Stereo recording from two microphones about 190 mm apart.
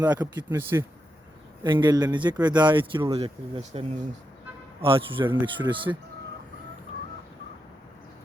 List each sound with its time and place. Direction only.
0.2 s speech: 10° right (ahead or behind)